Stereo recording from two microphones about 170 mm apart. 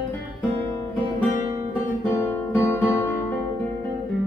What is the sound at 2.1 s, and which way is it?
Music, 15° left (ahead or behind).